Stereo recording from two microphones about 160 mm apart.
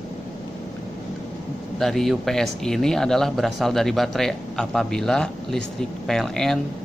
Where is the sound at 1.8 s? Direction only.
Centre (ahead or behind).